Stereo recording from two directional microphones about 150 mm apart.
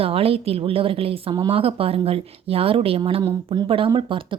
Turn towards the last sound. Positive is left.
turn(degrees=-35)  # may be behind; listen again after turning